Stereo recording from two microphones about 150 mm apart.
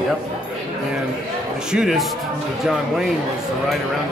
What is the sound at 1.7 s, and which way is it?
Speech, 5° right (ahead or behind).